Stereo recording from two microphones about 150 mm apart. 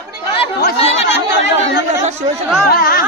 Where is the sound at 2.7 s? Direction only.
85° left.